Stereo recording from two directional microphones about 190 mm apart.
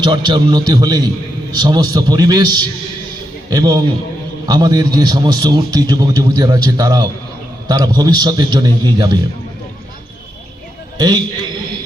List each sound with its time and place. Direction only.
0.0 s a man's voice: 25° right (ahead or behind)
10.9 s a man's voice: 20° right (ahead or behind)